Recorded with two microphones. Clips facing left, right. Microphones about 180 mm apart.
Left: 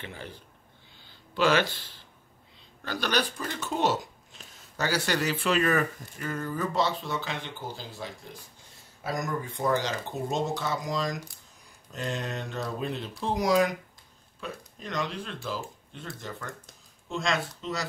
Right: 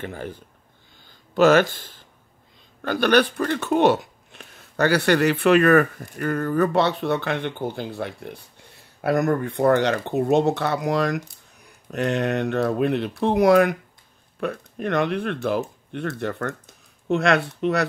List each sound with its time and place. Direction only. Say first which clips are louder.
0.0 s speech: right 9 dB; 45° right (ahead or behind)
1.0 s a sound: right 9 dB; 45° right (ahead or behind)
2.8 s speech: right 10 dB; 60° right (ahead or behind)